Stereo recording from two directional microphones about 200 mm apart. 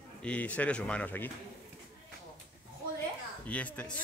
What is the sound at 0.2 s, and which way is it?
Speech, 5° left (ahead or behind).